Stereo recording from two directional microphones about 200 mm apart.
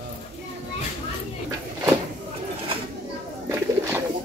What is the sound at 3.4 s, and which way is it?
Bird, 15° right (ahead or behind).